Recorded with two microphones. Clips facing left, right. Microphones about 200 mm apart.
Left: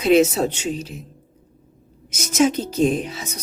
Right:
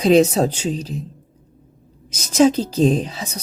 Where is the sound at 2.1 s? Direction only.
35° right (ahead or behind).